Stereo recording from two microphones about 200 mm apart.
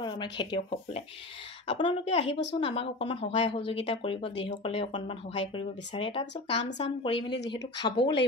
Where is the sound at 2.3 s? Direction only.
60° left (ahead or behind).